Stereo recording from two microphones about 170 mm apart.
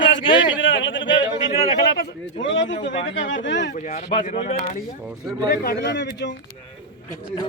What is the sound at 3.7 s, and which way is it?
Speech, 45° left (ahead or behind).